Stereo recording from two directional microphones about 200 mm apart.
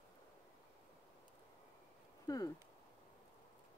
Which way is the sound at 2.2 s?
20° left (ahead or behind).